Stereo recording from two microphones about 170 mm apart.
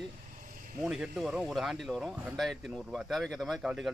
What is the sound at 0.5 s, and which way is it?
Vehicle, 55° right (ahead or behind).